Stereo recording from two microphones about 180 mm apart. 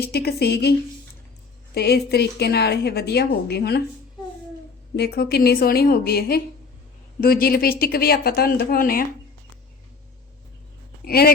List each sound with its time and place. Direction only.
0.0 s a woman's voice: 60° left (ahead or behind)
1.7 s a woman's voice: 65° left (ahead or behind)
4.9 s a woman's voice: 65° left (ahead or behind)
11.0 s speech: 60° left (ahead or behind)